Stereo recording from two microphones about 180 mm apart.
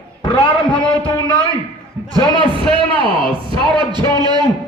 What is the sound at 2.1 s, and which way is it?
A man's voice, 25° right (ahead or behind).